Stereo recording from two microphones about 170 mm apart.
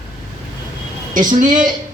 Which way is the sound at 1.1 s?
50° right (ahead or behind).